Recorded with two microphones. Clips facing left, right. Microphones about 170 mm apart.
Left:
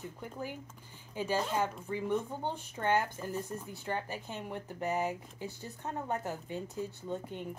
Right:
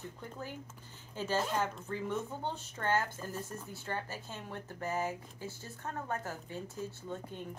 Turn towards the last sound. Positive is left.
turn(degrees=15)  # may be behind; listen again after turning